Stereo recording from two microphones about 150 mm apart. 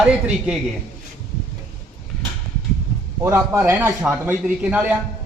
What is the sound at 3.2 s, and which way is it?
A man's voice, 15° right (ahead or behind).